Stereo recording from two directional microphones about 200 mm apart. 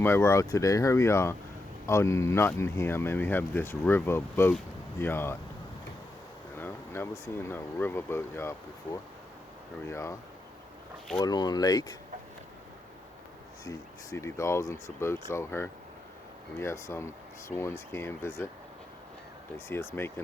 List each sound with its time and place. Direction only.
0.0 s speech: 10° left (ahead or behind)
6.6 s speech: 10° left (ahead or behind)
11.2 s speech: 20° left (ahead or behind)
13.7 s speech: 15° left (ahead or behind)
19.5 s speech: 10° left (ahead or behind)